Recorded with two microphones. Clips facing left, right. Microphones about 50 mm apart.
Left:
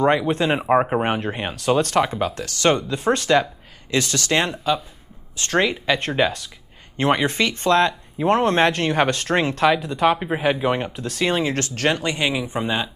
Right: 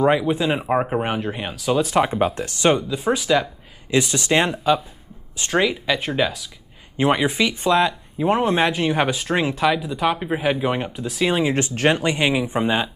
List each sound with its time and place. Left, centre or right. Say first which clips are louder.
0.0 s speech: even; centre
0.7 s speech: left 3 dB; centre
1.8 s speech: right 1 dB; centre
2.0 s speech: right 3 dB; right
2.7 s speech: even; centre
3.9 s speech: right 2 dB; centre
5.6 s speech: even; centre
7.0 s speech: right 1 dB; centre
11.5 s speech: right 3 dB; centre